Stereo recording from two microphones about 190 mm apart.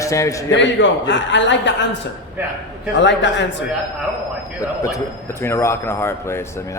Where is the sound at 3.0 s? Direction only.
70° left (ahead or behind).